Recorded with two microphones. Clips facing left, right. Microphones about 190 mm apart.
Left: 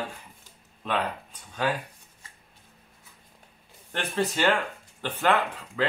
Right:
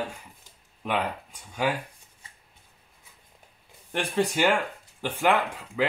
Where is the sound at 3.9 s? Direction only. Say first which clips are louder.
Right 2 dB; 15° right (ahead or behind).